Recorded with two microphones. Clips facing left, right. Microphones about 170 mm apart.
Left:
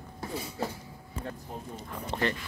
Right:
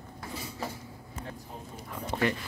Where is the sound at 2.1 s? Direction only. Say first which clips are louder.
Right 1 dB; 10° right (ahead or behind).